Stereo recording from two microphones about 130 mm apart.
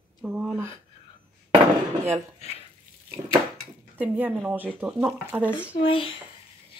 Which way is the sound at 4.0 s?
10° right (ahead or behind).